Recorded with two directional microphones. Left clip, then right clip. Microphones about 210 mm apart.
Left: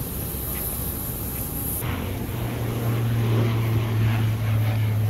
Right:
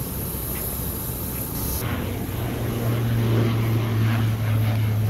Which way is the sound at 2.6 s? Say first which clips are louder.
Right 2 dB; 55° right (ahead or behind).